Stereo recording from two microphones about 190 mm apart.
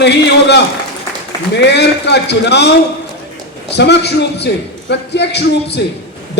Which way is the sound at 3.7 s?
60° left (ahead or behind).